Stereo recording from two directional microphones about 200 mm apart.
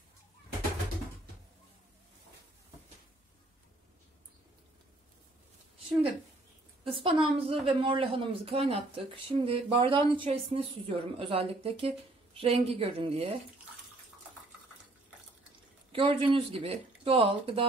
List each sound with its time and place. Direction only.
6.8 s a woman's voice: 25° right (ahead or behind)
15.9 s a woman's voice: 25° right (ahead or behind)